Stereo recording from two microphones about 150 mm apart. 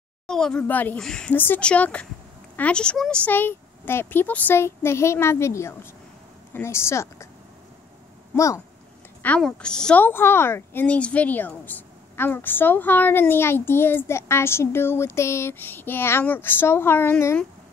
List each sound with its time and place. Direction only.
0.3 s speech: 5° left (ahead or behind)
9.2 s speech: 10° left (ahead or behind)